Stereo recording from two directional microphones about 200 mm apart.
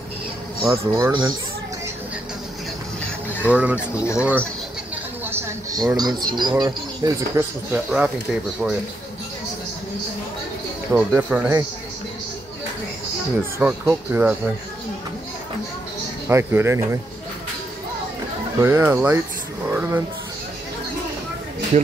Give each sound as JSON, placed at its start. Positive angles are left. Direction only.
{"t": 0.7, "sound": "speech", "side_deg": -15}
{"t": 3.4, "sound": "speech", "side_deg": -5}
{"t": 5.2, "sound": "a sound", "side_deg": -15}
{"t": 5.9, "sound": "speech", "side_deg": -20}
{"t": 7.7, "sound": "speech", "side_deg": -5}
{"t": 10.9, "sound": "speech", "side_deg": -10}
{"t": 13.6, "sound": "speech", "side_deg": -10}
{"t": 16.3, "sound": "speech", "side_deg": -15}
{"t": 18.6, "sound": "speech", "side_deg": -10}
{"t": 19.7, "sound": "a sound", "side_deg": -10}